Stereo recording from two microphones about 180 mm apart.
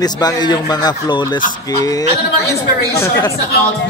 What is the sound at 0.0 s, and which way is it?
Speech, 20° left (ahead or behind).